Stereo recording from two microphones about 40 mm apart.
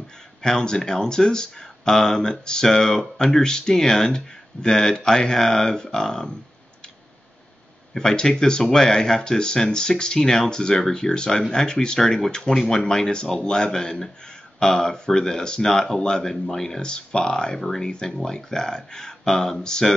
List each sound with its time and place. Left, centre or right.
0.4 s speech: centre
5.4 s speech: centre
7.9 s speech: centre
19.2 s speech: centre
19.6 s speech: centre